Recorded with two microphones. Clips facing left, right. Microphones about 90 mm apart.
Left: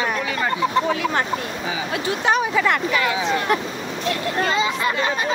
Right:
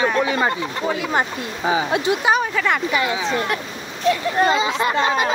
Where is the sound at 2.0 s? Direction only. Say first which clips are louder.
Right 3 dB; 15° right (ahead or behind).